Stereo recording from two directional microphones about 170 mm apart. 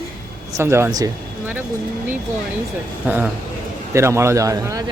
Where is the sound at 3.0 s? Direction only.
10° right (ahead or behind).